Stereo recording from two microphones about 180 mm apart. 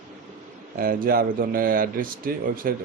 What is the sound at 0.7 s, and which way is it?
A man's voice, 50° right (ahead or behind).